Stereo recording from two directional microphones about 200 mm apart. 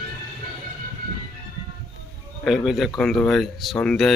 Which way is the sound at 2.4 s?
Centre (ahead or behind).